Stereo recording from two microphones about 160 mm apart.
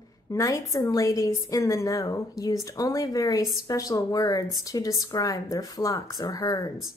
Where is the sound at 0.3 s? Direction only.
20° left (ahead or behind).